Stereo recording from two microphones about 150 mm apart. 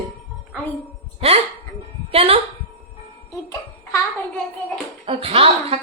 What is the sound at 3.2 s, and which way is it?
Babbling, 20° left (ahead or behind).